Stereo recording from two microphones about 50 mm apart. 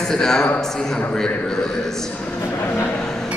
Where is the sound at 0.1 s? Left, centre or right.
Centre.